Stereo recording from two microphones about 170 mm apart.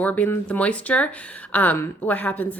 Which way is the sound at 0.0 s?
10° left (ahead or behind).